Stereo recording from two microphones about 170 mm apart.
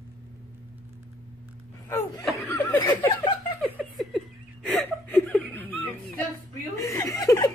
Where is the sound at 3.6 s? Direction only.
Centre (ahead or behind).